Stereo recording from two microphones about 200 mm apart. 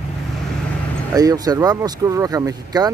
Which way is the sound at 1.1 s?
20° right (ahead or behind).